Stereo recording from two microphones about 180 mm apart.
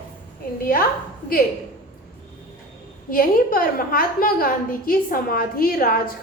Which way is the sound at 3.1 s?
50° left (ahead or behind).